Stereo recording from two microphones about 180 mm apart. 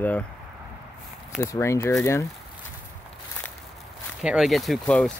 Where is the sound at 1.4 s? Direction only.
15° left (ahead or behind).